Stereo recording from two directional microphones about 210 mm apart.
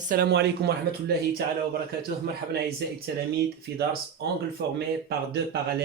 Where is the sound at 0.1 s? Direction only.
50° right (ahead or behind).